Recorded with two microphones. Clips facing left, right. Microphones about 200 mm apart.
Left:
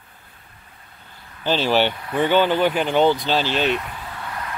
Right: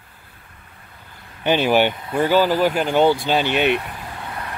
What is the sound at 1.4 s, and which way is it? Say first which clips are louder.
Speech: right 2 dB; 15° right (ahead or behind).